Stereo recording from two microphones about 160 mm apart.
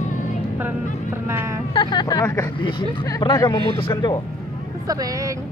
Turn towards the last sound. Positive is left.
turn(degrees=25)  # may be behind; listen again after turning